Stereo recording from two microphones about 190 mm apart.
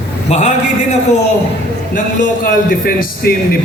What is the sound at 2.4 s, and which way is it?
Speech, 50° left (ahead or behind).